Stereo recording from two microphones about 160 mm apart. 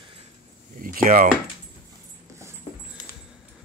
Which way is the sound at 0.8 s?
60° right (ahead or behind).